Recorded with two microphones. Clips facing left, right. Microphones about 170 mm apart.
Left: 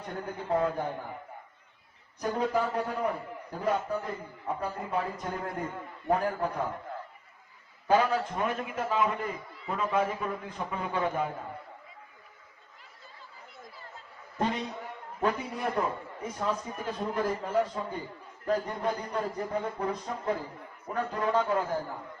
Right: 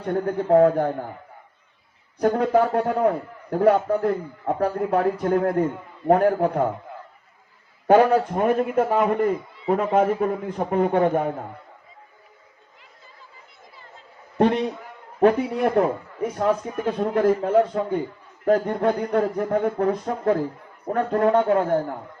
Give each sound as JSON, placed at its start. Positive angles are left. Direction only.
{"t": 0.0, "sound": "a man's voice", "side_deg": -65}
{"t": 2.2, "sound": "a man's voice", "side_deg": -65}
{"t": 7.9, "sound": "a man's voice", "side_deg": -60}
{"t": 14.3, "sound": "a man's voice", "side_deg": -65}